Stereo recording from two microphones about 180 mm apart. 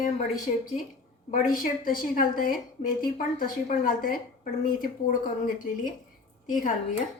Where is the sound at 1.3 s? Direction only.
50° left (ahead or behind).